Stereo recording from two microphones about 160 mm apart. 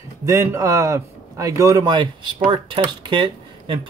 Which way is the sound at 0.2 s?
20° right (ahead or behind).